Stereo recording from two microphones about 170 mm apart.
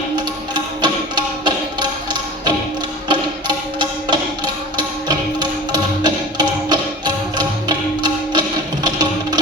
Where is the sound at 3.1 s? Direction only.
25° right (ahead or behind).